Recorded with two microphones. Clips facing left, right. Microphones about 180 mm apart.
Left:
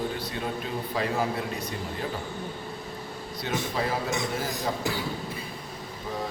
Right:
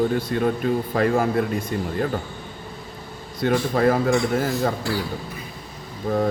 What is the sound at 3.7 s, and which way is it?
Speech, 55° right (ahead or behind).